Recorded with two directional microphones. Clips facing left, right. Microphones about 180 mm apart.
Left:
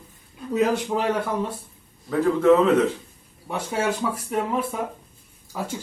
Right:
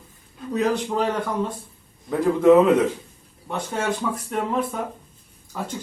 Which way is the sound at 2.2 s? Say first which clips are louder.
Right 2 dB; 10° right (ahead or behind).